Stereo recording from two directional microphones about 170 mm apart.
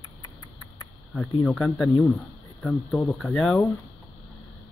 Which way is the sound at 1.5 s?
5° left (ahead or behind).